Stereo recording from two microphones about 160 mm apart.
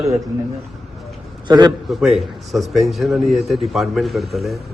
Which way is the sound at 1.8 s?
Centre (ahead or behind).